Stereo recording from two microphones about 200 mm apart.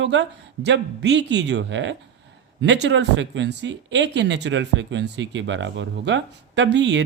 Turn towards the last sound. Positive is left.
turn(degrees=-60)  # may be behind; listen again after turning